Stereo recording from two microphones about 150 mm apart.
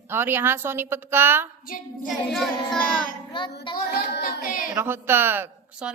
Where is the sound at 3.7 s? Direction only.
80° left.